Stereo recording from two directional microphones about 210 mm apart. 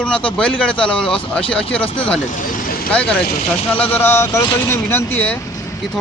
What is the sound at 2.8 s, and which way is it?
Speech, 5° left (ahead or behind).